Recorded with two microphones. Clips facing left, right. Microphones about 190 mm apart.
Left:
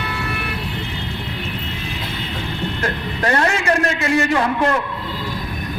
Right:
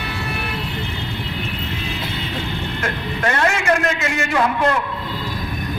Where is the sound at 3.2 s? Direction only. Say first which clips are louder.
Left 1 dB; 35° left (ahead or behind).